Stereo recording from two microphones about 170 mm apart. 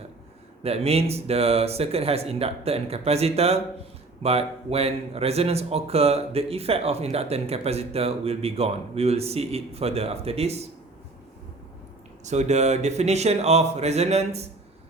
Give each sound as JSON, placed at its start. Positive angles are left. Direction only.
{"t": 0.6, "sound": "speech", "side_deg": -35}
{"t": 12.2, "sound": "speech", "side_deg": -40}